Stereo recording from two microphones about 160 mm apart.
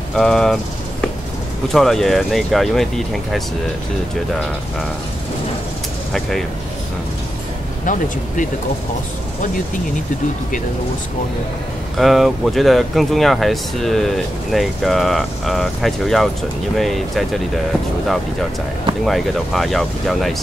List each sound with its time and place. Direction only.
0.1 s speech: 5° left (ahead or behind)
1.7 s speech: centre (ahead or behind)
7.8 s speech: 55° left (ahead or behind)
12.0 s speech: centre (ahead or behind)
19.0 s speech: centre (ahead or behind)